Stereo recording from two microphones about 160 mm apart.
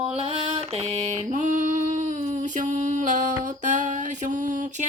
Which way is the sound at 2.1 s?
50° right (ahead or behind).